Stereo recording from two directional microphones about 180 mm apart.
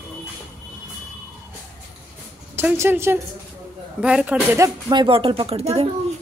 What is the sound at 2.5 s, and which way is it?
A woman's voice, 10° right (ahead or behind).